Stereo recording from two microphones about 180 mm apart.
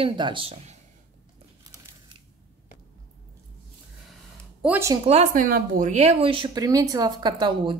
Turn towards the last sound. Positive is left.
turn(degrees=-25)  # may be behind; listen again after turning